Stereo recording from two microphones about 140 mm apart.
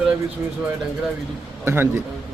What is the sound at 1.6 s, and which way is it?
Speech, 15° right (ahead or behind).